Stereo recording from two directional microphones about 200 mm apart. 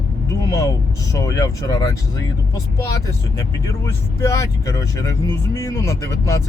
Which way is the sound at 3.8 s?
15° left (ahead or behind).